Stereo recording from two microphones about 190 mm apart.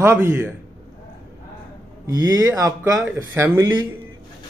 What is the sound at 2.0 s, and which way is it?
Speech, 20° right (ahead or behind).